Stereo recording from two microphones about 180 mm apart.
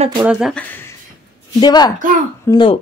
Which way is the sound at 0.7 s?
10° left (ahead or behind).